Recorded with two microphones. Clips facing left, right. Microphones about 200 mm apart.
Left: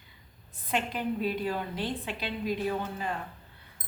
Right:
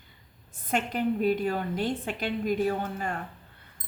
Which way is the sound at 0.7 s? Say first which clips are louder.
Right 3 dB; 45° right (ahead or behind).